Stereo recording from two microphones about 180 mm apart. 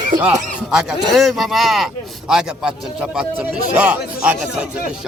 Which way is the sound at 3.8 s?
10° right (ahead or behind).